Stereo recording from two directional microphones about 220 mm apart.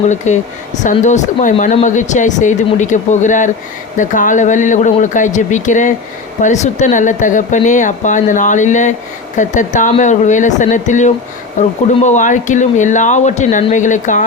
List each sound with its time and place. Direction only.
0.3 s speech: 30° left (ahead or behind)